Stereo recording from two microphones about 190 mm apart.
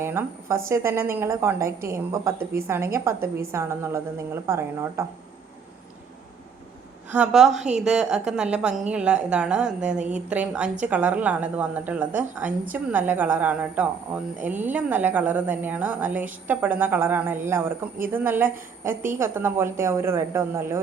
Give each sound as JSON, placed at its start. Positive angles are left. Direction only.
{"t": 0.0, "sound": "a woman's voice", "side_deg": -15}
{"t": 7.1, "sound": "a woman's voice", "side_deg": -5}